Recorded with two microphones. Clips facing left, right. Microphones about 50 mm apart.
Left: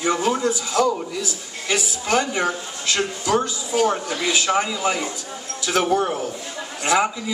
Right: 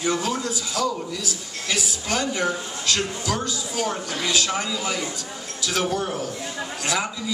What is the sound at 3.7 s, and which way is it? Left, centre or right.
Speech, left.